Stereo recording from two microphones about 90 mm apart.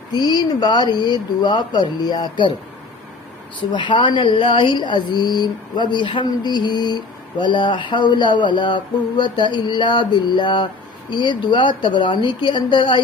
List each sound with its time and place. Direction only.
0.1 s speech: 50° left (ahead or behind)
3.7 s speech: 60° left (ahead or behind)